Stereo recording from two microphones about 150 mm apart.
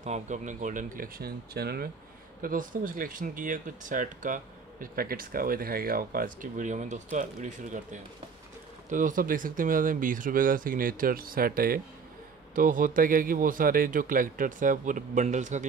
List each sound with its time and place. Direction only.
0.0 s speech: 50° right (ahead or behind); by 1.9 s 90° right
2.4 s speech: 60° right (ahead or behind)
12.5 s speech: 65° right (ahead or behind)